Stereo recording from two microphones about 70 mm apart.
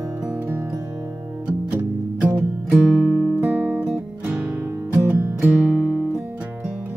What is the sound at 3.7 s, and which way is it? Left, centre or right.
Music, centre.